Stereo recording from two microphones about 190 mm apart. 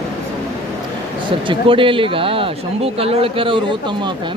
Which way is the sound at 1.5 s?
25° right (ahead or behind).